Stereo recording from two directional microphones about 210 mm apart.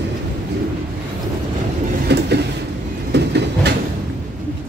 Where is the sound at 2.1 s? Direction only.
50° right (ahead or behind).